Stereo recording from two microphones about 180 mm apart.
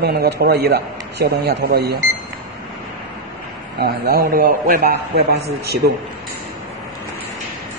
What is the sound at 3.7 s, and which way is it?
A man's voice, 60° right (ahead or behind).